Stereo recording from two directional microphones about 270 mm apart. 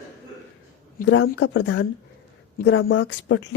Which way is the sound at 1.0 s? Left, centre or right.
Left.